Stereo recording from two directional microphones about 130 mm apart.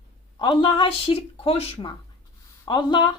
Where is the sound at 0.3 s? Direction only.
40° left (ahead or behind).